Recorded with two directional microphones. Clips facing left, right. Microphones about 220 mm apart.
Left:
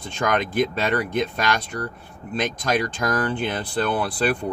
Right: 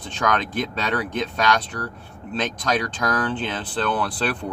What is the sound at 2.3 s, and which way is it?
Speech, 10° left (ahead or behind).